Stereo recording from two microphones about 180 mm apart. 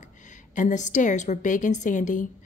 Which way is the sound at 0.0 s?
45° left (ahead or behind).